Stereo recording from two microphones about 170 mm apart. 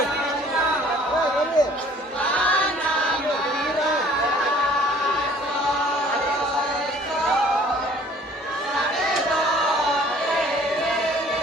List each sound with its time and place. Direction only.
1.6 s chatter: 25° left (ahead or behind)